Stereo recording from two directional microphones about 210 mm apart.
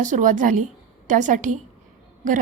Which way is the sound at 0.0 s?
35° right (ahead or behind).